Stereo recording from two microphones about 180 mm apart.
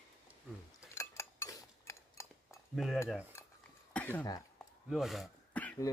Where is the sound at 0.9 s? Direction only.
15° left (ahead or behind).